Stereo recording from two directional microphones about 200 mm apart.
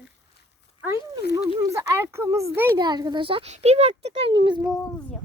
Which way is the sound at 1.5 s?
15° right (ahead or behind).